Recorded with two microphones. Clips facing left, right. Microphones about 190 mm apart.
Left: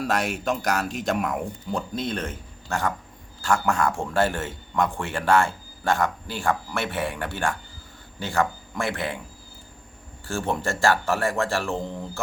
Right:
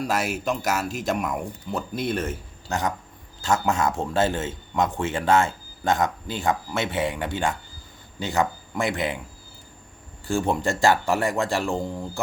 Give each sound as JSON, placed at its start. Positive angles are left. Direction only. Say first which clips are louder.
{"t": 0.0, "sound": "a man's voice", "louder": "even", "side_deg": -5}
{"t": 10.2, "sound": "speech", "louder": "right 3 dB", "side_deg": -15}